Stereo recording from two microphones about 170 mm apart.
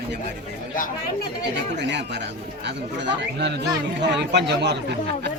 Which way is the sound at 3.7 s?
90° right.